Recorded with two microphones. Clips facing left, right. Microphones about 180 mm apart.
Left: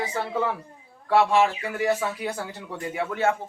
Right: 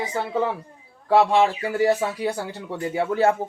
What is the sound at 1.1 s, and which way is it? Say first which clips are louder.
Speech: right 2 dB; 35° right (ahead or behind).